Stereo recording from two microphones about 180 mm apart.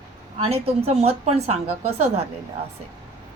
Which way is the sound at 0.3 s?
35° right (ahead or behind).